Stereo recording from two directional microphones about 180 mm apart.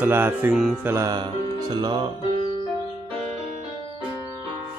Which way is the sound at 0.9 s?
20° right (ahead or behind).